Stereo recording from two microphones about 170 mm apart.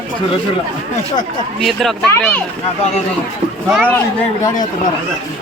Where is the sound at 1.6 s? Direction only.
Centre (ahead or behind).